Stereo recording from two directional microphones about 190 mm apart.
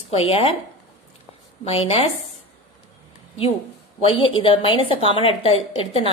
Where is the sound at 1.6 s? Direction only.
30° left (ahead or behind).